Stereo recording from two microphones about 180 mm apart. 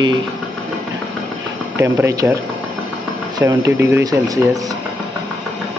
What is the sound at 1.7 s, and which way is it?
Speech, 15° right (ahead or behind).